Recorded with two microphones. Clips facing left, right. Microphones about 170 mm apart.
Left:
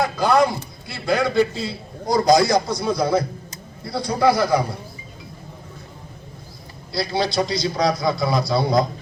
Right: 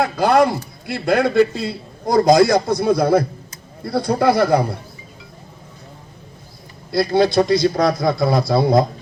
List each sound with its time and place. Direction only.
0.0 s a man's voice: 60° right (ahead or behind)
6.9 s a man's voice: 55° right (ahead or behind)